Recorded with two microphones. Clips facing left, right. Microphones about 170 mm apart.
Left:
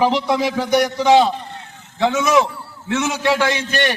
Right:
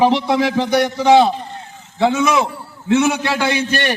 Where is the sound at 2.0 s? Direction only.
15° right (ahead or behind).